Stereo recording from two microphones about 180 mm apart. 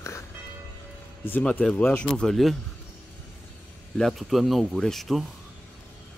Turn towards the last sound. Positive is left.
turn(degrees=0)  # may be behind; listen again after turning